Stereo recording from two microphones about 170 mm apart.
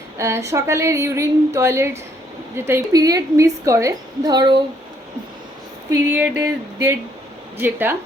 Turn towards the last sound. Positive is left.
turn(degrees=-10)  # may be behind; listen again after turning